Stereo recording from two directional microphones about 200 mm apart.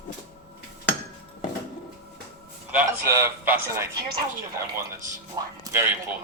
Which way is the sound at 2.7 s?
15° right (ahead or behind).